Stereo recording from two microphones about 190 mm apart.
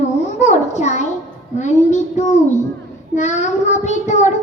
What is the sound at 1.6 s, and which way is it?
Child singing, 40° left (ahead or behind).